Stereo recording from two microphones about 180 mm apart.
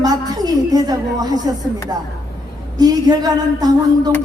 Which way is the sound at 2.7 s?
20° right (ahead or behind).